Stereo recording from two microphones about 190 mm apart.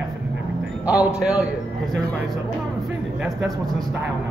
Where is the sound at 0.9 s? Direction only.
5° right (ahead or behind).